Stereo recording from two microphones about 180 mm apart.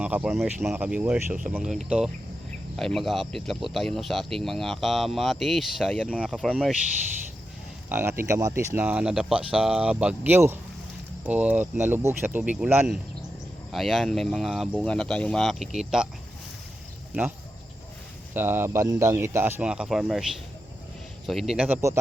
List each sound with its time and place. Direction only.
0.0 s speech: 10° right (ahead or behind)
7.9 s speech: 15° right (ahead or behind)
18.3 s speech: 10° right (ahead or behind)
21.8 s speech: 15° right (ahead or behind)